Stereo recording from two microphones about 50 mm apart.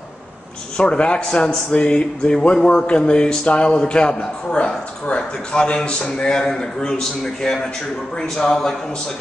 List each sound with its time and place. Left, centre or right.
0.7 s a man's voice: centre